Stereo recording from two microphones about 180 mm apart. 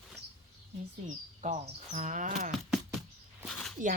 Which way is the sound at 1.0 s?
40° right (ahead or behind).